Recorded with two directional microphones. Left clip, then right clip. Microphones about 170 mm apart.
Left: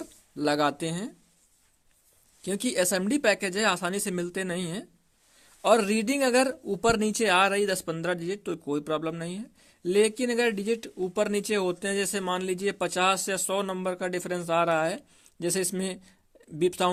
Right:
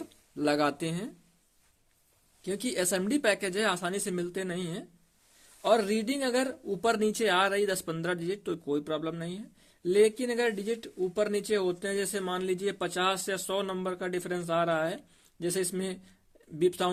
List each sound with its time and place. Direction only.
0.0 s speech: 20° left (ahead or behind)
2.4 s speech: 35° left (ahead or behind)